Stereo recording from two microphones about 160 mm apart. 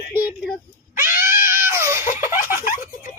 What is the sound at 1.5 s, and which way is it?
Baby cry, 15° right (ahead or behind).